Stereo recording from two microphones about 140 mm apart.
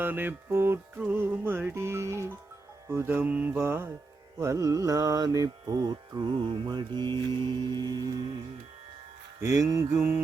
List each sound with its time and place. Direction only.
0.0 s music: 15° right (ahead or behind)
4.4 s mantra: 20° right (ahead or behind)
9.6 s mantra: 25° right (ahead or behind)